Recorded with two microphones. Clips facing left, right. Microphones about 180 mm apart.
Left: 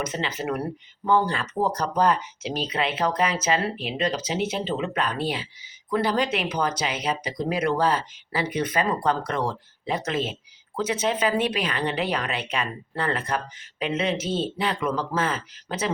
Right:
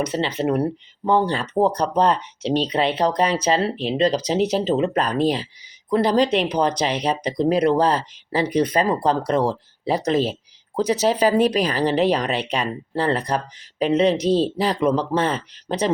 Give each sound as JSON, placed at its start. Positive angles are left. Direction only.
{"t": 0.0, "sound": "speech", "side_deg": -35}